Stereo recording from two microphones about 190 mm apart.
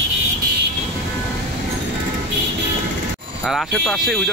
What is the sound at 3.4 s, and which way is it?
Speech, centre (ahead or behind).